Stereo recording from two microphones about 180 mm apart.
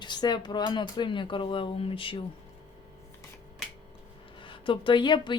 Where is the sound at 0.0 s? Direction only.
25° left (ahead or behind).